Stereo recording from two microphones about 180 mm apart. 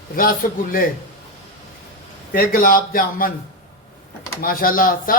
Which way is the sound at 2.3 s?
55° left (ahead or behind).